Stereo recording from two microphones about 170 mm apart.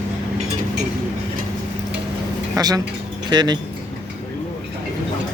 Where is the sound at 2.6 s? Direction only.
20° right (ahead or behind).